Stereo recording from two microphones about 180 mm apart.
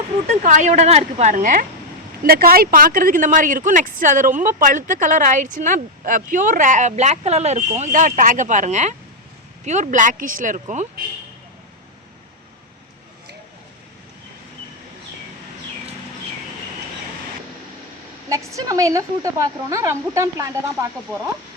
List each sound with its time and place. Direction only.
0.3 s a woman's voice: 40° right (ahead or behind)
18.3 s a woman's voice: 15° right (ahead or behind)